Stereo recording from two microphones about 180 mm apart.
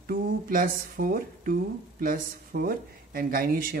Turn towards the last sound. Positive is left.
turn(degrees=-55)  # may be behind; listen again after turning